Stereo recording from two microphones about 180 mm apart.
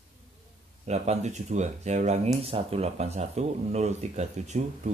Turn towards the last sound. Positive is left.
turn(degrees=-40)  # may be behind; listen again after turning